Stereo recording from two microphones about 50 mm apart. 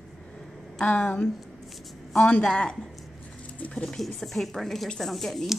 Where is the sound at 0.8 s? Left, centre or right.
Left.